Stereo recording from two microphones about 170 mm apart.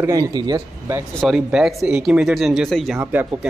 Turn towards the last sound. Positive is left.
turn(degrees=-10)  # may be behind; listen again after turning